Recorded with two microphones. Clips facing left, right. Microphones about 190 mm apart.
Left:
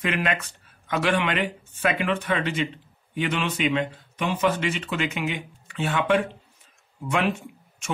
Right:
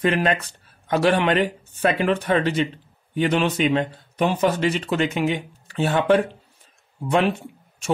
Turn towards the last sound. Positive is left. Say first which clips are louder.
# right 3 dB
turn(degrees=-35)  # may be behind; listen again after turning